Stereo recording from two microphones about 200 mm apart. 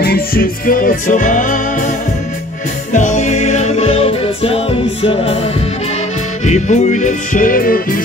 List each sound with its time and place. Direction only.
0.0 s music: 50° left (ahead or behind)